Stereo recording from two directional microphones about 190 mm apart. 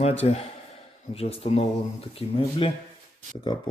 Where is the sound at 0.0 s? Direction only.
35° left (ahead or behind).